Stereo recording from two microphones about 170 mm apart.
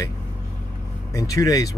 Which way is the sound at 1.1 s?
20° left (ahead or behind).